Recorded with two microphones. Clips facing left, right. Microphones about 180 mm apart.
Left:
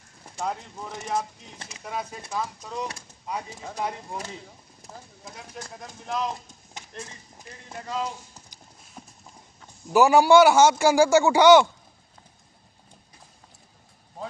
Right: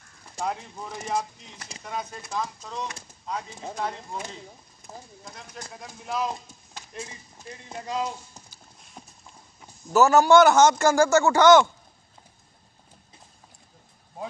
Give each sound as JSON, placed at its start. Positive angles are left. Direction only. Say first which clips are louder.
{"t": 0.4, "sound": "speech", "louder": "even", "side_deg": -5}
{"t": 1.8, "sound": "a man's voice", "louder": "left 1 dB", "side_deg": 5}
{"t": 4.8, "sound": "clip-clop", "louder": "right 1 dB", "side_deg": 40}
{"t": 5.2, "sound": "speech", "louder": "left 5 dB", "side_deg": 5}
{"t": 9.9, "sound": "a man's voice", "louder": "left 1 dB", "side_deg": 10}